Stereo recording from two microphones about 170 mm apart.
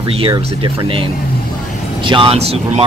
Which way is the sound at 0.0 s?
35° right (ahead or behind).